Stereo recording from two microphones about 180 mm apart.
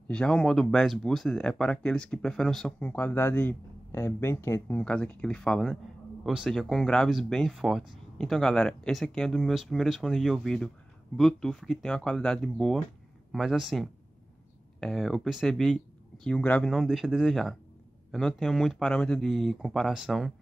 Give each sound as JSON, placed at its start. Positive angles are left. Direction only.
{"t": 0.1, "sound": "speech", "side_deg": 5}